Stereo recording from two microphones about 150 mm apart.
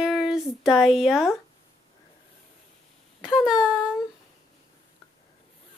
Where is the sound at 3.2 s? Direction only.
5° right (ahead or behind).